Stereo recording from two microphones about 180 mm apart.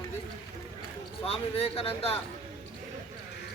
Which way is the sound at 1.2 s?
35° left (ahead or behind).